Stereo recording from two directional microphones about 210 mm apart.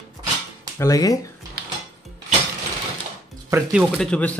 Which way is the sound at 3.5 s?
5° right (ahead or behind).